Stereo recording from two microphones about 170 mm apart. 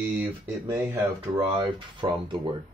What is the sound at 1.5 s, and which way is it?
Speech, 25° right (ahead or behind).